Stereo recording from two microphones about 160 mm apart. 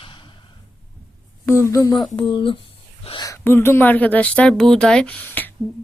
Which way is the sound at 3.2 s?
15° left (ahead or behind).